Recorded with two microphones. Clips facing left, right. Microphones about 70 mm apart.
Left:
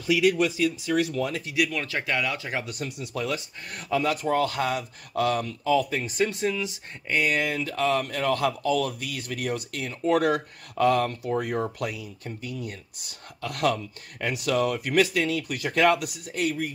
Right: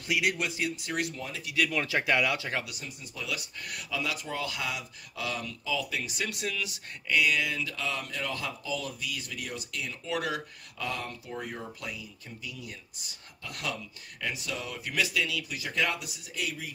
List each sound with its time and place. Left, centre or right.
1.1 s speech: left
1.7 s speech: centre
2.8 s speech: left
3.3 s speech: left
3.9 s speech: left
7.2 s speech: left